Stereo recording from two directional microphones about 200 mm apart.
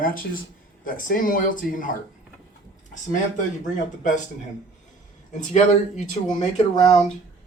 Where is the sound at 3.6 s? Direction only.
40° left (ahead or behind).